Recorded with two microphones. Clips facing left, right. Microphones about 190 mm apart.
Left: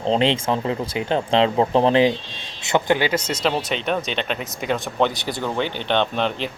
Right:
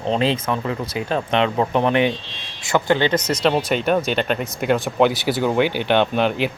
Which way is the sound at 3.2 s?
25° left (ahead or behind).